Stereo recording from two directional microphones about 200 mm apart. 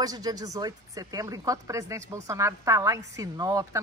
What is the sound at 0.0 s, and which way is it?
Speech, 20° right (ahead or behind).